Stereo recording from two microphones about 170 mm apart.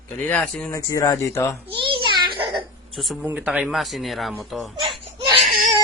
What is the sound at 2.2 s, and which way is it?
Baby cry, 30° right (ahead or behind).